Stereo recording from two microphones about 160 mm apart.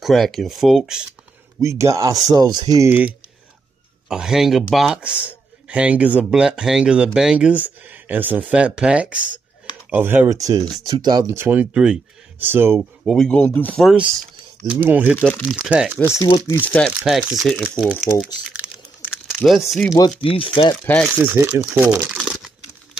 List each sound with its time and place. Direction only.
0.0 s speech: centre (ahead or behind)
1.6 s speech: 20° right (ahead or behind)
4.1 s speech: 5° right (ahead or behind)
13.0 s speech: 5° left (ahead or behind)
14.7 s speech: 10° right (ahead or behind)
15.1 s speech: 10° left (ahead or behind)
15.4 s speech: 5° right (ahead or behind)
16.2 s speech: 20° left (ahead or behind)
16.6 s speech: 10° left (ahead or behind)
17.0 s speech: centre (ahead or behind)
18.5 s crumpling: 10° right (ahead or behind)
20.3 s speech: 35° left (ahead or behind)
21.0 s speech: 10° right (ahead or behind)
22.1 s crumpling: 5° right (ahead or behind)